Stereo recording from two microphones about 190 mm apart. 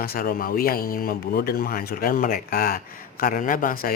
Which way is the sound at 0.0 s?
50° left (ahead or behind).